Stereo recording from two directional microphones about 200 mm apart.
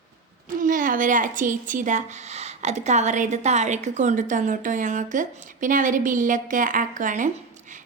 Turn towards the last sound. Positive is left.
turn(degrees=-40)  # may be behind; listen again after turning